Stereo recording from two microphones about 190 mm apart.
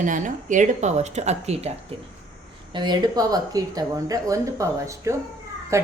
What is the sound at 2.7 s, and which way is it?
Speech, 25° right (ahead or behind).